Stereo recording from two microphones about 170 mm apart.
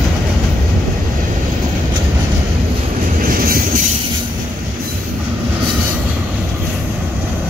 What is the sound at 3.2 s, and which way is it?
Train, 55° right (ahead or behind).